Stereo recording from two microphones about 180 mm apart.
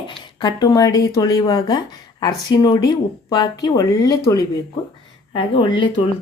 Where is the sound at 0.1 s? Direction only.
25° left (ahead or behind).